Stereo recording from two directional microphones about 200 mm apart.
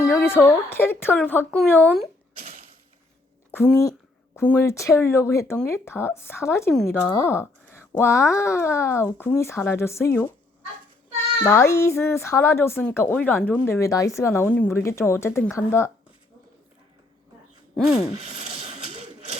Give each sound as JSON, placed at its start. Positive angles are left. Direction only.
{"t": 0.1, "sound": "speech", "side_deg": 10}
{"t": 2.4, "sound": "a sound", "side_deg": -40}
{"t": 3.5, "sound": "speech", "side_deg": 10}
{"t": 11.4, "sound": "speech", "side_deg": 15}
{"t": 17.7, "sound": "rub", "side_deg": 0}
{"t": 18.2, "sound": "a sound", "side_deg": -30}